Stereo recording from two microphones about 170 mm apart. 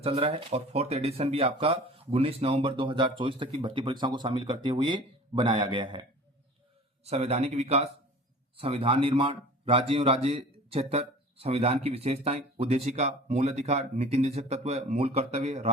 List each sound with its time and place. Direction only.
0.0 s speech: 35° right (ahead or behind)